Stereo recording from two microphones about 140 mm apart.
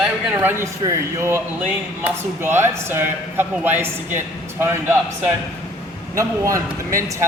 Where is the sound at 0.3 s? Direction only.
15° right (ahead or behind).